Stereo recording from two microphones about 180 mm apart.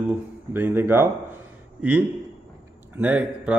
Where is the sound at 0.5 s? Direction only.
10° right (ahead or behind).